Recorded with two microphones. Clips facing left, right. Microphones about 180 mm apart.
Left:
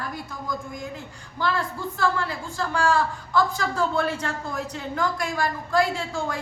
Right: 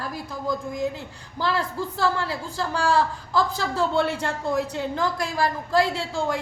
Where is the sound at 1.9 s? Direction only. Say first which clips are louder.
Even; 35° right (ahead or behind).